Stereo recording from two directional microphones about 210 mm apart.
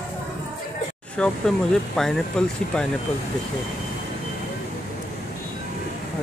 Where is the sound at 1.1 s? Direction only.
5° left (ahead or behind).